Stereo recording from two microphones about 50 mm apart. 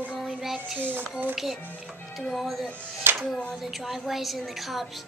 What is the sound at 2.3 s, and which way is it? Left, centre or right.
Speech, centre.